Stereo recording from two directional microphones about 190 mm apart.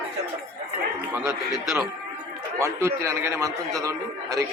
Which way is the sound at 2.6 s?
15° right (ahead or behind).